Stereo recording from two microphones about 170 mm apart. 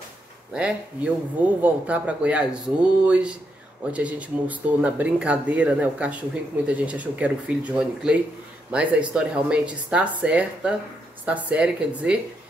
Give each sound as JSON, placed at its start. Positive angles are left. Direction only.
{"t": 0.5, "sound": "speech", "side_deg": -5}